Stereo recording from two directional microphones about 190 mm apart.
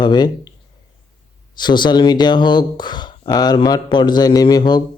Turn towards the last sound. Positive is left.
turn(degrees=20)  # may be behind; listen again after turning